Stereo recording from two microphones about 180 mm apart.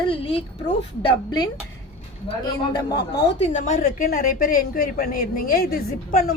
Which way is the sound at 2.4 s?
25° left (ahead or behind).